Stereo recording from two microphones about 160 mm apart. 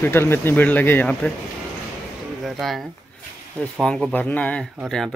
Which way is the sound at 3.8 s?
10° left (ahead or behind).